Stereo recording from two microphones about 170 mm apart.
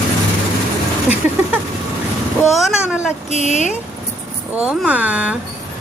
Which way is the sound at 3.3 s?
40° left (ahead or behind).